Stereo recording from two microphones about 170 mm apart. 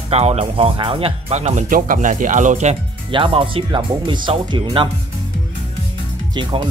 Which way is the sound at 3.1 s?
30° right (ahead or behind).